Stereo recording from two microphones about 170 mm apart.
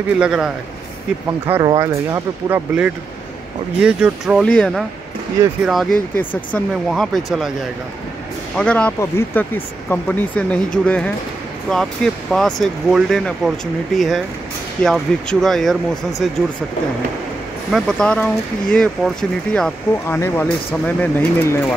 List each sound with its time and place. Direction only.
0.2 s speech: 5° right (ahead or behind)
1.6 s speech: 20° right (ahead or behind)
4.4 s speech: 5° left (ahead or behind)
6.1 s speech: 10° left (ahead or behind)
8.5 s speech: 5° left (ahead or behind)
17.6 s speech: centre (ahead or behind)